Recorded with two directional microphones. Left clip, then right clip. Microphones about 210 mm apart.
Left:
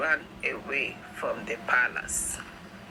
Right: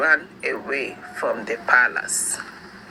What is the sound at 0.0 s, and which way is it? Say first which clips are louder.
A woman's voice: right 8 dB; 15° right (ahead or behind).